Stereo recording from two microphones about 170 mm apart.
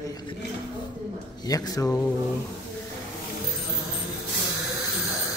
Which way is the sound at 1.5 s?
20° left (ahead or behind).